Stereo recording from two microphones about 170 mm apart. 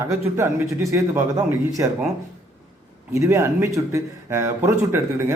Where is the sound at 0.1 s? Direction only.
15° right (ahead or behind).